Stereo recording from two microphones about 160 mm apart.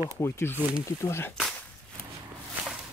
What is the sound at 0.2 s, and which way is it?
Speech, 15° left (ahead or behind).